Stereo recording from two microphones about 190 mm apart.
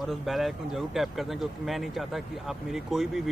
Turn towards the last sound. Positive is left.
turn(degrees=0)  # may be behind; listen again after turning